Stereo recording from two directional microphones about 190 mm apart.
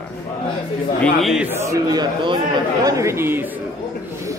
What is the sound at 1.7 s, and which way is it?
A man's voice, 20° right (ahead or behind).